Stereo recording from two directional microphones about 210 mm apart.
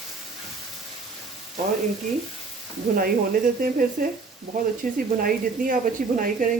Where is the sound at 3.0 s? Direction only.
40° right (ahead or behind).